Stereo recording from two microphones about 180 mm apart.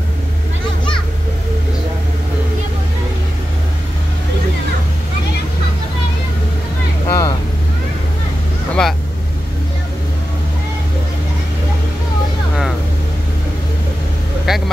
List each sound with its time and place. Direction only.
7.1 s vehicle: 20° left (ahead or behind)
8.8 s vehicle: 5° left (ahead or behind)
14.5 s vehicle: centre (ahead or behind)